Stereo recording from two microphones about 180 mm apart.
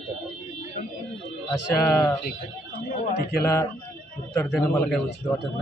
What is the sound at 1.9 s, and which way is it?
Speech, 15° left (ahead or behind).